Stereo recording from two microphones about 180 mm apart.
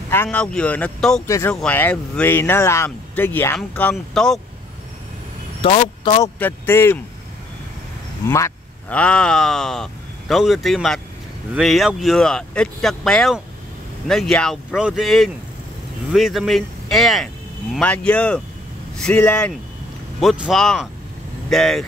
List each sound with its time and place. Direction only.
0.1 s speech: 10° left (ahead or behind)
1.2 s speech: 15° left (ahead or behind)
5.6 s speech: 30° left (ahead or behind)
6.2 s speech: 10° left (ahead or behind)
8.3 s speech: 15° left (ahead or behind)